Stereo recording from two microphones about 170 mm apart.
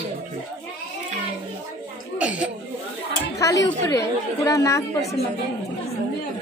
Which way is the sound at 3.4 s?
20° left (ahead or behind).